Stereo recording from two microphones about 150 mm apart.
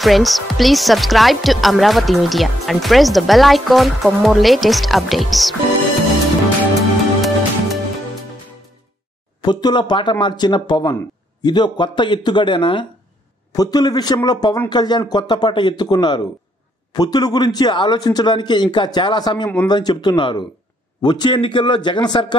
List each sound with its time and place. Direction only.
0.0 s speech: centre (ahead or behind)
7.2 s music: centre (ahead or behind)
9.4 s a man's voice: 30° left (ahead or behind)